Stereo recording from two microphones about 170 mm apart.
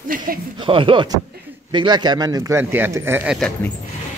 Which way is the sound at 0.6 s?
30° right (ahead or behind).